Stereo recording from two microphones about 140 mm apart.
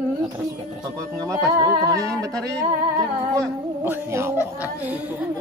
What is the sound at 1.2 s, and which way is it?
Music, 25° right (ahead or behind).